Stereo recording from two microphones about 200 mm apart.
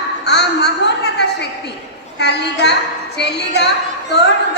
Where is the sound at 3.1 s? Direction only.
55° left (ahead or behind).